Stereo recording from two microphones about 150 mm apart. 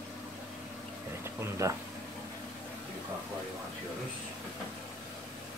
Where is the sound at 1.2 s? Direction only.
15° right (ahead or behind).